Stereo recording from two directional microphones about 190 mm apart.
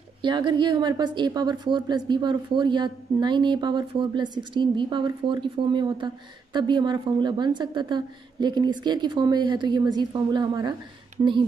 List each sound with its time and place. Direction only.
0.2 s a woman's voice: 25° right (ahead or behind)